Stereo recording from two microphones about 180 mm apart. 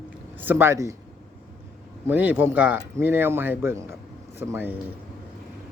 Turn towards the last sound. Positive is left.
turn(degrees=-10)  # may be behind; listen again after turning